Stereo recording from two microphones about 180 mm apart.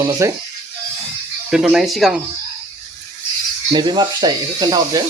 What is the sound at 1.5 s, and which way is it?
Speech, 5° right (ahead or behind).